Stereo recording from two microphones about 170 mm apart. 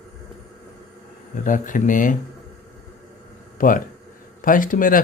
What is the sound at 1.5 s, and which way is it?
Speech, 50° left (ahead or behind).